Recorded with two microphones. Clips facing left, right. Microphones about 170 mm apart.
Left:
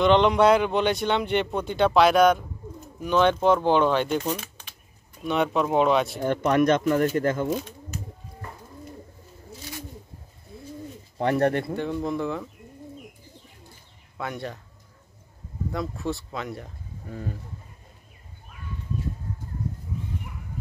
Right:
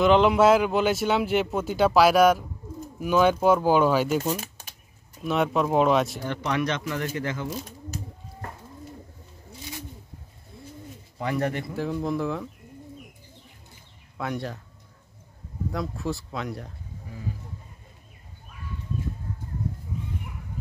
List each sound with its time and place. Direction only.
0.0 s a man's voice: 5° right (ahead or behind)
4.4 s a sound: 45° right (ahead or behind)
5.2 s a man's voice: centre (ahead or behind)
6.2 s speech: 50° left (ahead or behind)
11.1 s speech: 55° left (ahead or behind)
11.7 s a man's voice: centre (ahead or behind)
14.1 s speech: centre (ahead or behind)
15.7 s a man's voice: centre (ahead or behind)
17.1 s speech: 55° left (ahead or behind)